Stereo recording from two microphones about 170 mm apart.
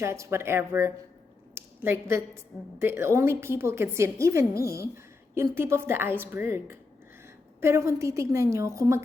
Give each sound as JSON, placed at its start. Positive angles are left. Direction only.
{"t": 0.0, "sound": "a woman's voice", "side_deg": -15}